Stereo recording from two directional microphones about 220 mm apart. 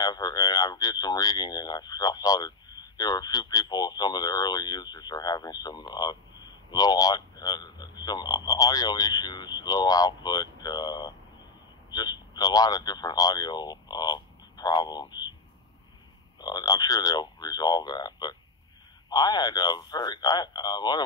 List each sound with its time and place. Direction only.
0.0 s speech: 20° left (ahead or behind)
16.3 s speech: 20° left (ahead or behind)